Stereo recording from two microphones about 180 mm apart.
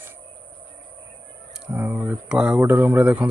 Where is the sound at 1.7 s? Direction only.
10° right (ahead or behind).